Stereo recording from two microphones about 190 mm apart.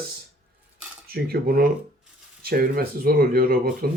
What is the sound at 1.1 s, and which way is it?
Speech, 55° right (ahead or behind).